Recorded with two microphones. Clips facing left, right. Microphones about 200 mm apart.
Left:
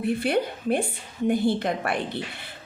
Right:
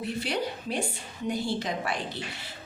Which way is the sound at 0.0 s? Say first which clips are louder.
Left 7 dB; 55° left (ahead or behind).